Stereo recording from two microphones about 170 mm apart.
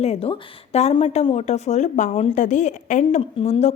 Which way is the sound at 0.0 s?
35° left (ahead or behind).